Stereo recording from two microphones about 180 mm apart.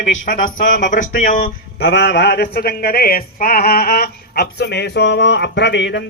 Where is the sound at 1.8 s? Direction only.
70° left (ahead or behind).